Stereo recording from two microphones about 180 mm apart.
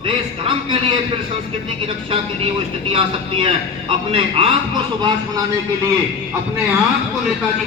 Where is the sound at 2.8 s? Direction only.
30° right (ahead or behind).